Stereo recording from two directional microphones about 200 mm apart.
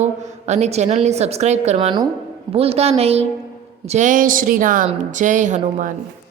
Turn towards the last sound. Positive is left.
turn(degrees=-40)  # may be behind; listen again after turning